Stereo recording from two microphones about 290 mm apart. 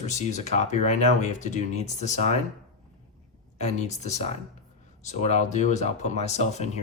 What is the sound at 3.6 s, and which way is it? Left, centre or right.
Speech, left.